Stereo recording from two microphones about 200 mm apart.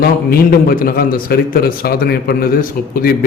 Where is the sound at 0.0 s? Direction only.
50° left (ahead or behind).